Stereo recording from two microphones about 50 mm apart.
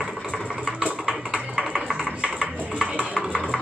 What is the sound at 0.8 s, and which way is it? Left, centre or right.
Typing, right.